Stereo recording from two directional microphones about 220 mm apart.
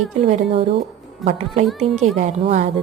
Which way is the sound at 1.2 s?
Centre (ahead or behind).